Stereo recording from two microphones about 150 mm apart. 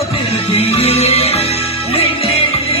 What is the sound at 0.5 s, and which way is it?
Music, 40° left (ahead or behind).